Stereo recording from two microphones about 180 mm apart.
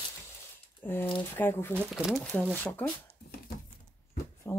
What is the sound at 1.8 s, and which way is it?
Speech, 10° right (ahead or behind).